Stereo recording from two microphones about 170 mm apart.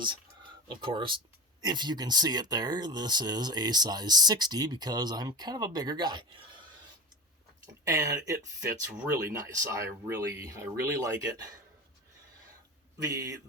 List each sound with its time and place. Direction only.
0.0 s a sound: 30° right (ahead or behind)
1.6 s speech: 25° right (ahead or behind)
7.9 s speech: 20° right (ahead or behind)
8.9 s speech: 5° right (ahead or behind)
9.1 s speech: 20° right (ahead or behind)
13.0 s speech: 20° right (ahead or behind)